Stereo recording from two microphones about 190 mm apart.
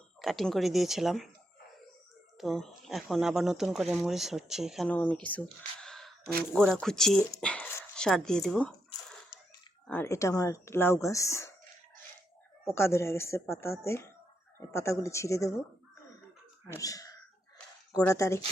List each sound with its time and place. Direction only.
0.2 s speech: centre (ahead or behind)
2.4 s speech: centre (ahead or behind)
7.4 s a sound: 5° left (ahead or behind)
9.8 s speech: 10° left (ahead or behind)
12.7 s speech: 15° left (ahead or behind)
16.7 s speech: 20° left (ahead or behind)